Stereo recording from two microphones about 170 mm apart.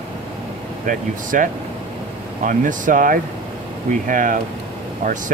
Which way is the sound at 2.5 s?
50° right (ahead or behind).